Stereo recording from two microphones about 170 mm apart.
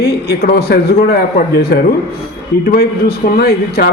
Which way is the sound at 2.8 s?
65° left (ahead or behind).